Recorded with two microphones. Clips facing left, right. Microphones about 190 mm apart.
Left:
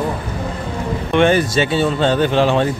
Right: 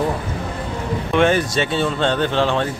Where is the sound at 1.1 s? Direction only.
Centre (ahead or behind).